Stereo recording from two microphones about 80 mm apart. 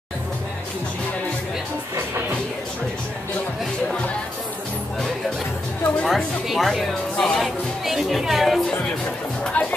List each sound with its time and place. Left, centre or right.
6.0 s speech: centre
9.4 s speech: centre